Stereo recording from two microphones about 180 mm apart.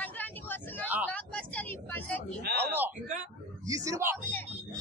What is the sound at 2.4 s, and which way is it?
Speech, 65° right (ahead or behind).